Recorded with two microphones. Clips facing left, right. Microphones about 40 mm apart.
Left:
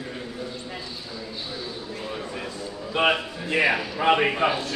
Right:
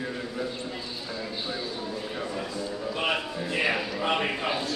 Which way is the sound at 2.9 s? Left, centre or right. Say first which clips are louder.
Left 8 dB; left.